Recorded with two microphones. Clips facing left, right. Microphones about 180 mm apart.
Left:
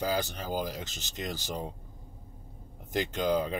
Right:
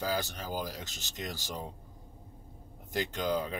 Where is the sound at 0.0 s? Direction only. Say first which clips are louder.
Left 3 dB; 15° left (ahead or behind).